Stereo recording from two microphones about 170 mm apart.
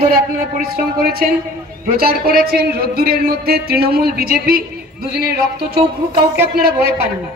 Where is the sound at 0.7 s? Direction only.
65° right (ahead or behind).